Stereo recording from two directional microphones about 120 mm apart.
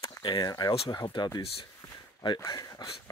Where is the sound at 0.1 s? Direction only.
40° left (ahead or behind).